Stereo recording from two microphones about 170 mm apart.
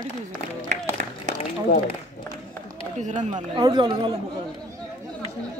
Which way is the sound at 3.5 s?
25° right (ahead or behind).